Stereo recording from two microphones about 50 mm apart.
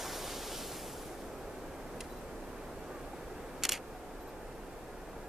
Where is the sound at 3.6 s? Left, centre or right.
Centre.